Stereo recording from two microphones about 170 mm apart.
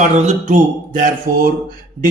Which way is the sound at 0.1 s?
40° right (ahead or behind).